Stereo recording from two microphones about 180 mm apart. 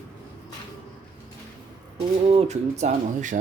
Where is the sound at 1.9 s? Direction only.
35° right (ahead or behind).